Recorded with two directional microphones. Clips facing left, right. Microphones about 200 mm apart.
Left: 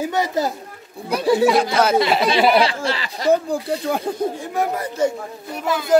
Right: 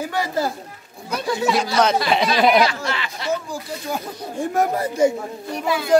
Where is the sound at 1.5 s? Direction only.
55° left (ahead or behind).